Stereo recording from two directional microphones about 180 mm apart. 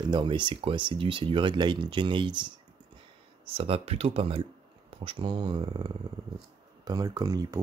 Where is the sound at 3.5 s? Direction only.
35° right (ahead or behind).